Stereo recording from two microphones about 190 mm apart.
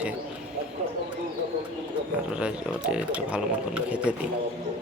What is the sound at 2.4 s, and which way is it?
Speech, 5° right (ahead or behind).